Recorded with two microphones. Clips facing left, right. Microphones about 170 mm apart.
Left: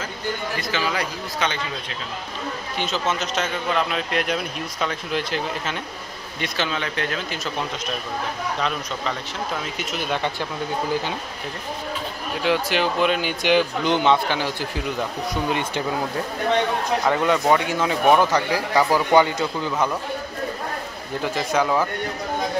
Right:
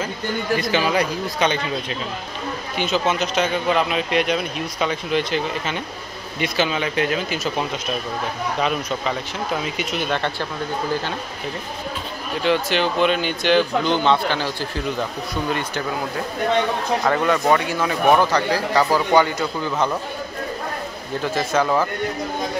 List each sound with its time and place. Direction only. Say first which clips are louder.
0.6 s speech: right 7 dB; 20° right (ahead or behind)
3.2 s speech: right 4 dB; 5° right (ahead or behind)
8.5 s speech: right 4 dB; 10° right (ahead or behind)
9.9 s speech: right 1 dB; 10° left (ahead or behind)
12.4 s speech: right 1 dB; 5° left (ahead or behind)
17.1 s speech: right 1 dB; 15° left (ahead or behind)
21.4 s speech: right 1 dB; 15° left (ahead or behind)